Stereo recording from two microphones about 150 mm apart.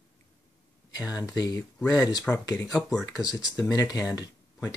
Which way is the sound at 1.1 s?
25° left (ahead or behind).